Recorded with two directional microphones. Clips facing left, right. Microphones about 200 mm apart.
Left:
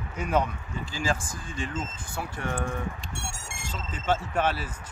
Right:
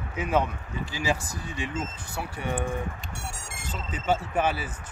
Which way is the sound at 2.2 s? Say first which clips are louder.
Right 1 dB; 5° right (ahead or behind).